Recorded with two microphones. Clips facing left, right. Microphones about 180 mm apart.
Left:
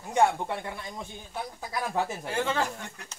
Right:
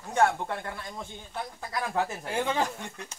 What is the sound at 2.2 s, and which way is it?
Speech, 15° right (ahead or behind).